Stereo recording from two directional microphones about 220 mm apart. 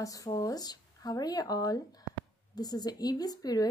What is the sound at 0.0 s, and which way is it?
Speech, 15° left (ahead or behind).